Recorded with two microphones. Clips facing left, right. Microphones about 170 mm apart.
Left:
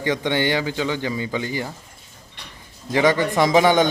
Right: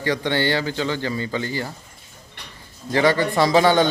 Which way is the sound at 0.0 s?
20° left (ahead or behind).